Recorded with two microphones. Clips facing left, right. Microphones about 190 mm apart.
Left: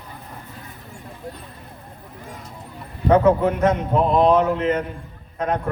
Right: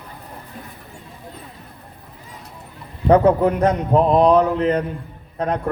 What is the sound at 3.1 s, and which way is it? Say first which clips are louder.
A man's voice: right 2 dB; 35° right (ahead or behind).